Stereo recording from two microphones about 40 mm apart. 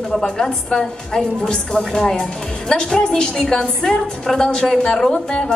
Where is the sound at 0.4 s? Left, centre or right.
Centre.